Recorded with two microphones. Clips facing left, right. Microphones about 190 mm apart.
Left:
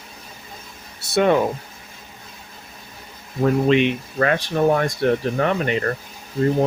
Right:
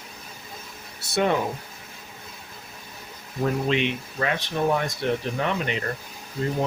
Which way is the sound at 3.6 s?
55° left (ahead or behind).